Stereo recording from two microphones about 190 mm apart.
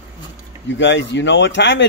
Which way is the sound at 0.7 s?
75° left (ahead or behind).